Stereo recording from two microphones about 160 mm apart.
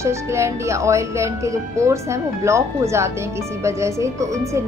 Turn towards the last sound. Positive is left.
turn(degrees=-20)  # may be behind; listen again after turning